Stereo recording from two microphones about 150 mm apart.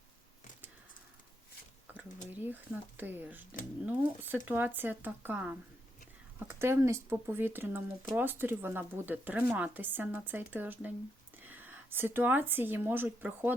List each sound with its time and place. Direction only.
2.3 s speech: 10° right (ahead or behind)